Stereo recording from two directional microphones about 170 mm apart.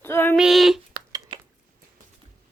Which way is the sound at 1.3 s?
25° right (ahead or behind).